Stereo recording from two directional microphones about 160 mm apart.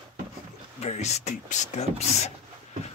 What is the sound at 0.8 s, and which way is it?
Speech, 45° left (ahead or behind).